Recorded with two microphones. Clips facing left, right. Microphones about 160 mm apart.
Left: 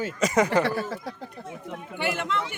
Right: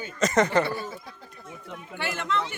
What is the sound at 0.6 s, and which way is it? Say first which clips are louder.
Speech: left 4 dB; 90° left.